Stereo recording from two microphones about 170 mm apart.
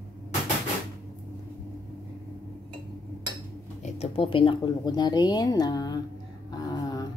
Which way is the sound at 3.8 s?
35° left (ahead or behind).